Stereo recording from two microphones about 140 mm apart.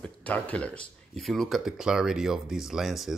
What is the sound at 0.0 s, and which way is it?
Speech, 10° left (ahead or behind).